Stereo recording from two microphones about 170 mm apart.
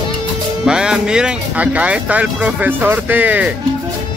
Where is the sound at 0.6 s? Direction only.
5° right (ahead or behind).